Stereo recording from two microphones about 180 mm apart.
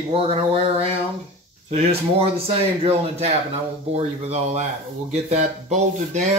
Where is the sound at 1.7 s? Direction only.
35° right (ahead or behind).